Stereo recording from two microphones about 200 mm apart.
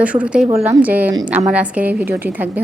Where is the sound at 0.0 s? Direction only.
5° right (ahead or behind).